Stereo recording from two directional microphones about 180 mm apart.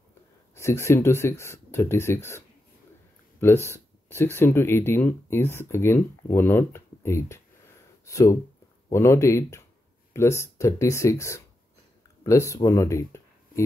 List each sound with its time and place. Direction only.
0.6 s speech: 15° left (ahead or behind)